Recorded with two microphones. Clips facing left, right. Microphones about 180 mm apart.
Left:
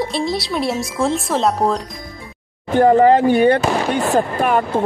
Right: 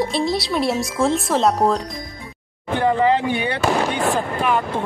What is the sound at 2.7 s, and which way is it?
Speech, 45° left (ahead or behind).